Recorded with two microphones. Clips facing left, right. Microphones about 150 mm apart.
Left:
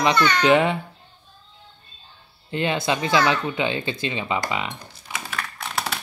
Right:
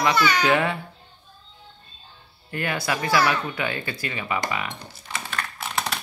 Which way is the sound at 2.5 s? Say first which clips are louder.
Left 4 dB; 20° left (ahead or behind).